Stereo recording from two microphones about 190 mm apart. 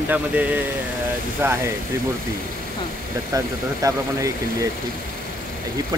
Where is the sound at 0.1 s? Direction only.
10° right (ahead or behind).